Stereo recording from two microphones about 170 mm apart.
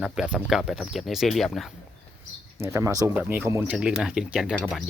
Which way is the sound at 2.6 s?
15° right (ahead or behind).